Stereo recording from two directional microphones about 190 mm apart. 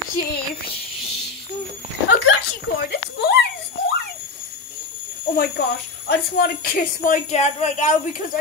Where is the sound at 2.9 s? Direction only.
60° left (ahead or behind).